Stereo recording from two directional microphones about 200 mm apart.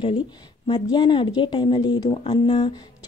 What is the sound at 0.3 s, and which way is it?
Speech, 20° left (ahead or behind).